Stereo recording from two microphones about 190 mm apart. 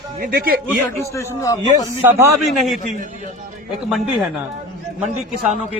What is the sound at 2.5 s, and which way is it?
Speech, centre (ahead or behind).